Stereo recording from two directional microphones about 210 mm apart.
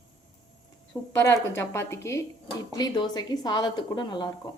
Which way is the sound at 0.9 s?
15° left (ahead or behind).